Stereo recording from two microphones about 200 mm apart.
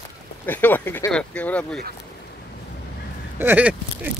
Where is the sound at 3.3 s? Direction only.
10° right (ahead or behind).